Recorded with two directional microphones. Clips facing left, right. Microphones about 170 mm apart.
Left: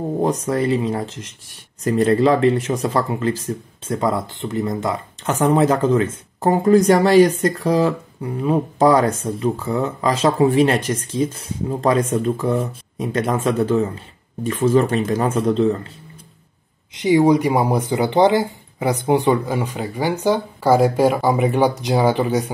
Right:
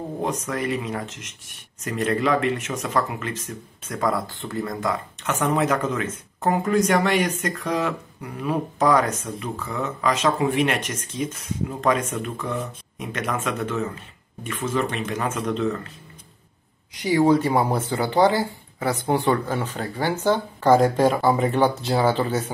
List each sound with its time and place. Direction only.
0.2 s speech: 35° left (ahead or behind)
16.9 s speech: 20° left (ahead or behind)